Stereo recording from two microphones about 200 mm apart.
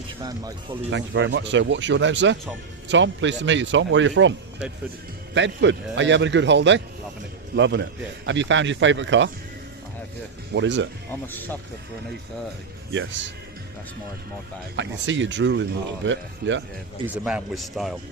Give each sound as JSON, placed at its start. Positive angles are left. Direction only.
{"t": 0.2, "sound": "speech", "side_deg": -15}
{"t": 0.9, "sound": "speech", "side_deg": -65}
{"t": 10.5, "sound": "speech", "side_deg": -65}
{"t": 11.1, "sound": "speech", "side_deg": 10}
{"t": 12.9, "sound": "speech", "side_deg": -65}
{"t": 14.8, "sound": "speech", "side_deg": -65}
{"t": 17.2, "sound": "a man's voice", "side_deg": 0}